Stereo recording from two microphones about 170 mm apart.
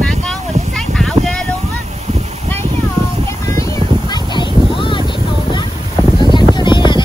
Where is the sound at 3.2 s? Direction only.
20° left (ahead or behind).